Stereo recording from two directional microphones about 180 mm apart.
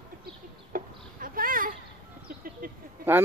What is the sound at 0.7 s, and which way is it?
Chicken, 50° right (ahead or behind).